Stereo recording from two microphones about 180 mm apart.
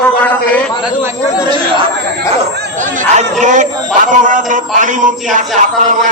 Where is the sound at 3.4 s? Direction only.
45° right (ahead or behind).